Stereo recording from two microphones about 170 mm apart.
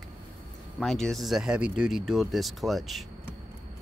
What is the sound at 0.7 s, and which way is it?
Speech, 5° left (ahead or behind).